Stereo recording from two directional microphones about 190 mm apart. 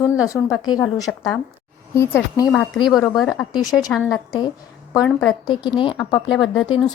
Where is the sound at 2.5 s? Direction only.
5° left (ahead or behind).